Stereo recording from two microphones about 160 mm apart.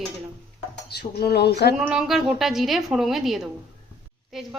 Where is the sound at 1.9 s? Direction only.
5° right (ahead or behind).